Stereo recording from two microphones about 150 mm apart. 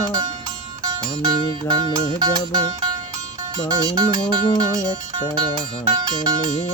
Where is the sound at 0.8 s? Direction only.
30° right (ahead or behind).